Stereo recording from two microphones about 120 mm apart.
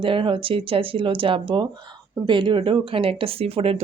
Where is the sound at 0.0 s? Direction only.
45° right (ahead or behind).